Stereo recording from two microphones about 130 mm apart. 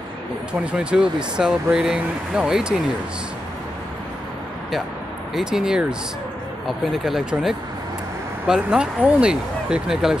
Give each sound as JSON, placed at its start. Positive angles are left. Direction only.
{"t": 0.5, "sound": "speech", "side_deg": -10}
{"t": 5.3, "sound": "speech", "side_deg": -5}